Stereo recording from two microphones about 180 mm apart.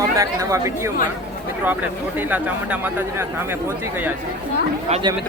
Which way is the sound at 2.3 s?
10° right (ahead or behind).